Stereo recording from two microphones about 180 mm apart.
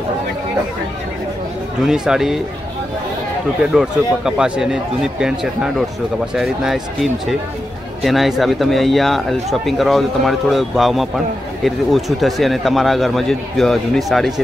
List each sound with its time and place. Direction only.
1.8 s speech: 5° right (ahead or behind)
3.7 s speech: 5° right (ahead or behind)